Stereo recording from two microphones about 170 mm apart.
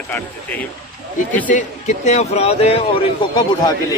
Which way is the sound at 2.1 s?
40° left (ahead or behind).